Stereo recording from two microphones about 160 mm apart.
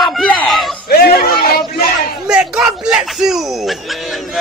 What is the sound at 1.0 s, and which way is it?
Music, 75° left (ahead or behind).